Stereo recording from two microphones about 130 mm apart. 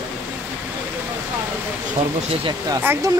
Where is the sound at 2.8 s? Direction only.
20° right (ahead or behind).